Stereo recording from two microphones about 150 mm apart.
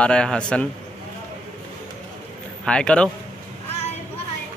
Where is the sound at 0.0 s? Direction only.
5° left (ahead or behind).